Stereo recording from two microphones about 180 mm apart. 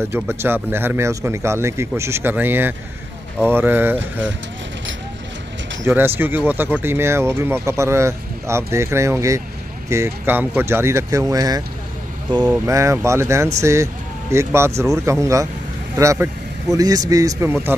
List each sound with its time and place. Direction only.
0.1 s speech: 15° right (ahead or behind)
5.9 s speech: 10° right (ahead or behind)